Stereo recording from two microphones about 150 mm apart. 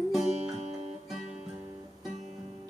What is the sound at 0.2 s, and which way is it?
Music, 50° right (ahead or behind).